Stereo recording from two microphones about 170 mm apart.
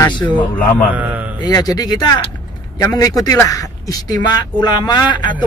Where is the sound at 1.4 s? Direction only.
20° left (ahead or behind).